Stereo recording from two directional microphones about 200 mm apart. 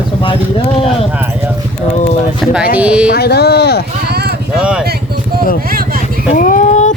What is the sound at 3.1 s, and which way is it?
Speech, 55° left (ahead or behind).